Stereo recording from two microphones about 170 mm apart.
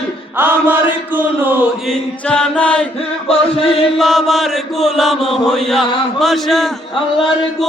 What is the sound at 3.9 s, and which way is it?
Mantra, centre (ahead or behind).